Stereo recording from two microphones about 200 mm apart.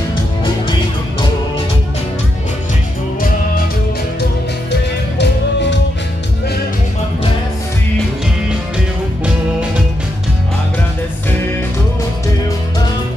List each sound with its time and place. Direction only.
5.2 s music: 60° left (ahead or behind)